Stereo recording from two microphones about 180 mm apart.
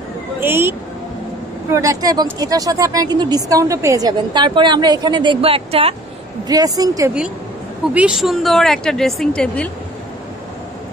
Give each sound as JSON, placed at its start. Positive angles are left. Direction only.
{"t": 0.4, "sound": "speech", "side_deg": -10}
{"t": 6.4, "sound": "speech", "side_deg": -20}
{"t": 7.9, "sound": "a woman's voice", "side_deg": -5}